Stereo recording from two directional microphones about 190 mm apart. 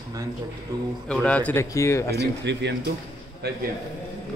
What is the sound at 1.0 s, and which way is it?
Speech, 5° left (ahead or behind).